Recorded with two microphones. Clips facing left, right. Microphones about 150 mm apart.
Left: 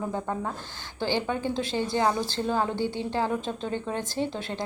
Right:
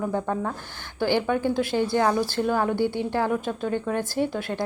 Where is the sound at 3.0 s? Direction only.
15° right (ahead or behind).